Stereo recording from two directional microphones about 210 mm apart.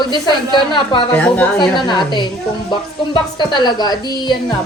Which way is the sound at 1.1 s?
5° left (ahead or behind).